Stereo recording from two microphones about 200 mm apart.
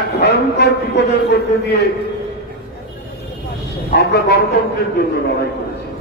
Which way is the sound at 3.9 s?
55° left (ahead or behind).